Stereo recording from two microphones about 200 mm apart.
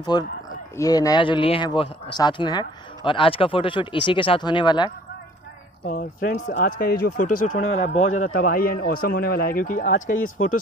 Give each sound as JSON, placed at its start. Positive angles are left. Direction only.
{"t": 0.1, "sound": "speech", "side_deg": 20}
{"t": 5.9, "sound": "a man's voice", "side_deg": 50}